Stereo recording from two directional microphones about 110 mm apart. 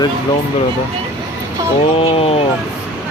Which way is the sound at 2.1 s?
65° left (ahead or behind).